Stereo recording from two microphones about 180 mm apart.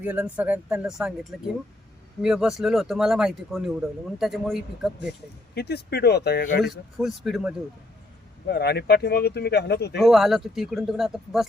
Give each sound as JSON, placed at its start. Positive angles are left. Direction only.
{"t": 0.0, "sound": "speech", "side_deg": -5}
{"t": 5.5, "sound": "speech", "side_deg": 65}
{"t": 6.6, "sound": "speech", "side_deg": 0}
{"t": 8.4, "sound": "speech", "side_deg": 65}
{"t": 10.0, "sound": "speech", "side_deg": 0}